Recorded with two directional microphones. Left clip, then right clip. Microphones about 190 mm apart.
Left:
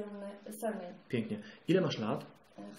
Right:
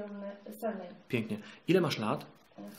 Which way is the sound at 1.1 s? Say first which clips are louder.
Right 2 dB; 25° right (ahead or behind).